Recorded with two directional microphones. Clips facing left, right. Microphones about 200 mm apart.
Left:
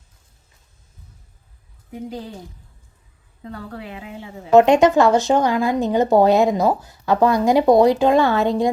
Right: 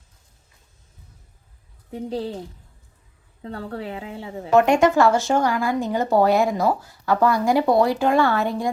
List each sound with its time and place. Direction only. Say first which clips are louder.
1.9 s a woman's voice: right 3 dB; 30° right (ahead or behind)
3.4 s a woman's voice: right 3 dB; 30° right (ahead or behind)
4.5 s speech: left 4 dB; 20° left (ahead or behind)